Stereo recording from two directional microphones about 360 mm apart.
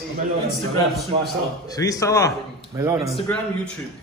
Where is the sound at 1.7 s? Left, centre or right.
Centre.